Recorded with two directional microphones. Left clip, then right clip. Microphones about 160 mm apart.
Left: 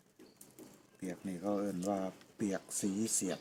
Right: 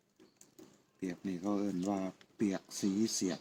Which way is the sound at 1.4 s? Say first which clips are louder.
Left 1 dB; 20° left (ahead or behind).